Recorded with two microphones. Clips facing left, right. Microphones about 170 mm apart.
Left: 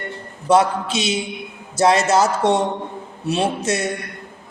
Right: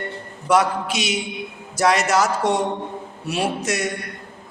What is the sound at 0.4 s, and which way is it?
A woman's voice, 25° left (ahead or behind).